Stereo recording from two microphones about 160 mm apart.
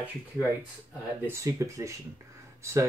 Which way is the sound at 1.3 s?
20° right (ahead or behind).